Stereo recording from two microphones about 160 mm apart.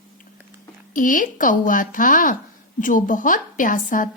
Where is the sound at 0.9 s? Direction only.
55° left (ahead or behind).